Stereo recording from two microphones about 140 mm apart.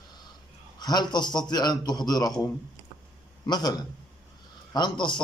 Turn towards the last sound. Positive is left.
turn(degrees=35)  # may be behind; listen again after turning